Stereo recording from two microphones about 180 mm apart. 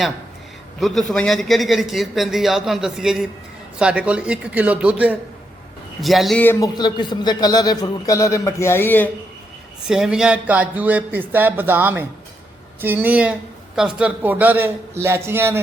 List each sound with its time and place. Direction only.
0.8 s a man's voice: centre (ahead or behind)
6.7 s a man's voice: 25° left (ahead or behind)
9.8 s speech: 5° right (ahead or behind)